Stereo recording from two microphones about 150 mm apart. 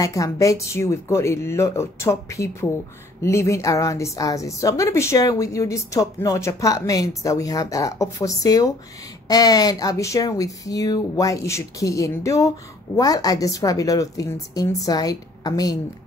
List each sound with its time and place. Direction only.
0.0 s a woman's voice: 20° left (ahead or behind)